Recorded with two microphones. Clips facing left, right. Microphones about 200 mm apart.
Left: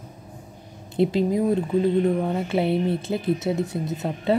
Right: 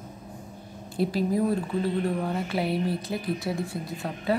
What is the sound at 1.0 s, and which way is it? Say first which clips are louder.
Speech: left 4 dB; 20° left (ahead or behind).